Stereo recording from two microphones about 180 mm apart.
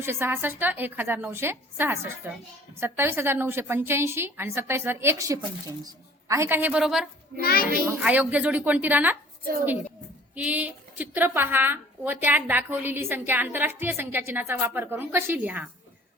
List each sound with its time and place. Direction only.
0.0 s a woman's voice: 15° right (ahead or behind)
7.4 s a child's voice: 55° left (ahead or behind)
7.9 s a woman's voice: 10° right (ahead or behind)
10.3 s a woman's voice: 10° right (ahead or behind)